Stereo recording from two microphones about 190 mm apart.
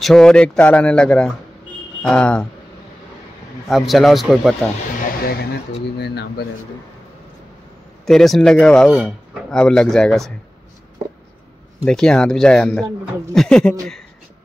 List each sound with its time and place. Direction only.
0.0 s speech: 5° left (ahead or behind)
3.6 s speech: centre (ahead or behind)
5.2 s speech: 55° left (ahead or behind)
8.0 s speech: centre (ahead or behind)
11.8 s speech: 5° left (ahead or behind)